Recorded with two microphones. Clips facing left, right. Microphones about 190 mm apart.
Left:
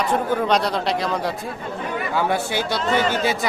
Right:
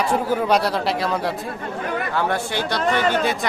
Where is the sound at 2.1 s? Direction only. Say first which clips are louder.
Left 3 dB; 5° left (ahead or behind).